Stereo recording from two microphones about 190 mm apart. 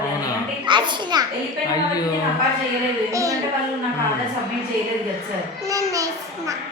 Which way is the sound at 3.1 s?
15° right (ahead or behind).